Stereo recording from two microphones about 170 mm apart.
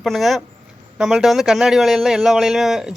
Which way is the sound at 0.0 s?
Centre (ahead or behind).